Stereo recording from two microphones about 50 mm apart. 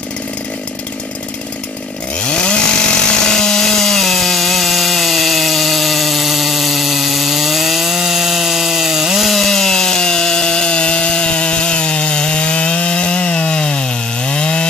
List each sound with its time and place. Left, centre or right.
2.1 s chainsaw: centre
3.3 s sawing: centre
9.3 s sawing: centre